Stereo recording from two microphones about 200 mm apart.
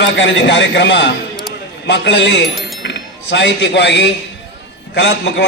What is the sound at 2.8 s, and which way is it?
A man's voice, 60° left (ahead or behind).